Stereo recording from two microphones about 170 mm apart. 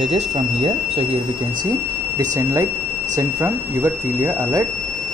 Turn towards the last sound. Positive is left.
turn(degrees=-15)  # may be behind; listen again after turning